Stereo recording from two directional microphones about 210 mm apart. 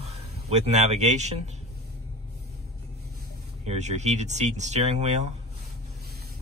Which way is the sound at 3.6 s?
30° right (ahead or behind).